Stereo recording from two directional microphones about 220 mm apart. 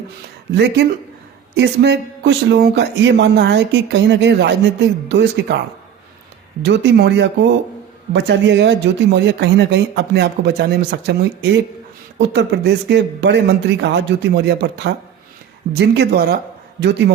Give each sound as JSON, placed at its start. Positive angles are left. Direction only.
{"t": 0.5, "sound": "speech", "side_deg": -50}
{"t": 6.6, "sound": "speech", "side_deg": -50}